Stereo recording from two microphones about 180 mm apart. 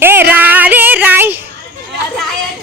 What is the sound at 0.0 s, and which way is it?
Music, 10° right (ahead or behind).